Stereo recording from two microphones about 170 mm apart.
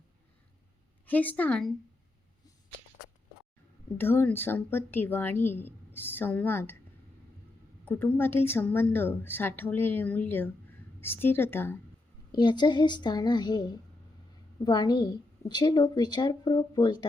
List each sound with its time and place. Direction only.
1.0 s a woman's voice: 10° left (ahead or behind)
3.9 s a woman's voice: 15° left (ahead or behind)
7.9 s a woman's voice: 10° left (ahead or behind)
12.3 s a woman's voice: 25° left (ahead or behind)